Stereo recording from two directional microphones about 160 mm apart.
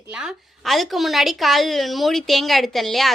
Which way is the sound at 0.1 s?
5° right (ahead or behind).